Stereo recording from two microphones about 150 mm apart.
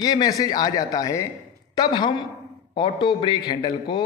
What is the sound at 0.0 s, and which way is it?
A man's voice, 25° left (ahead or behind).